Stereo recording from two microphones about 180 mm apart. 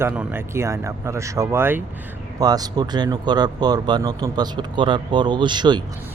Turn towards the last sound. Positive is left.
turn(degrees=-25)  # may be behind; listen again after turning